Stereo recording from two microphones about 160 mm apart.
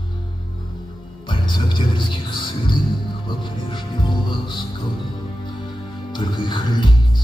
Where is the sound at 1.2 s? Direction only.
30° left (ahead or behind).